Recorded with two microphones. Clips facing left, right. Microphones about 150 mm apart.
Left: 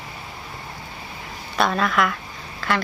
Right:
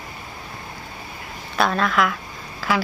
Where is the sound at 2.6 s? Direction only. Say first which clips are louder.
Right 1 dB; 5° right (ahead or behind).